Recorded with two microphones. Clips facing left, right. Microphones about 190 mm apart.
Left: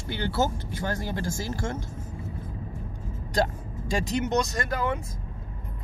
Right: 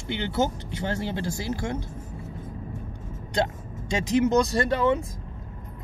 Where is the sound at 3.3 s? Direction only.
25° right (ahead or behind).